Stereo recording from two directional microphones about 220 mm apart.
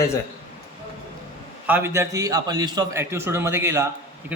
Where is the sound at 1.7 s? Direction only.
10° right (ahead or behind).